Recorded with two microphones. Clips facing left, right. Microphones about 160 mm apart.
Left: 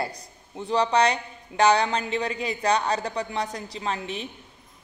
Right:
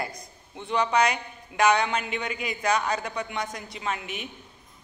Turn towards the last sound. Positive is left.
turn(degrees=30)  # may be behind; listen again after turning